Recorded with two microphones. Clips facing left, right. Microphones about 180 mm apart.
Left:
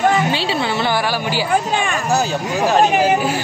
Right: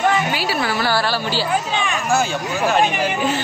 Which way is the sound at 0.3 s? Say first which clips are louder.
Left 2 dB; 25° left (ahead or behind).